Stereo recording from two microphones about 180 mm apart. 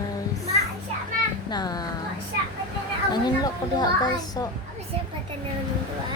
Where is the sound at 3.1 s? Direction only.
20° left (ahead or behind).